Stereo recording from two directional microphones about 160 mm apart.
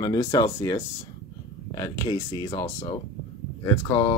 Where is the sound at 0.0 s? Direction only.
25° left (ahead or behind).